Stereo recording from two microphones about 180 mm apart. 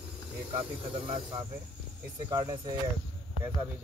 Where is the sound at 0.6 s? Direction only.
30° right (ahead or behind).